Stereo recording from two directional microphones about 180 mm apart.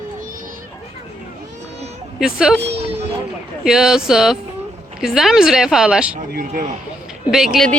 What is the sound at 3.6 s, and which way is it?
Speech, 5° right (ahead or behind).